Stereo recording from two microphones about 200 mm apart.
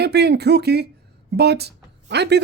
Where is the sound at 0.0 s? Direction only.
55° right (ahead or behind).